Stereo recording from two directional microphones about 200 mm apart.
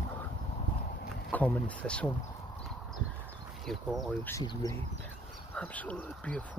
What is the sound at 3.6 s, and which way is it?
Speech, centre (ahead or behind).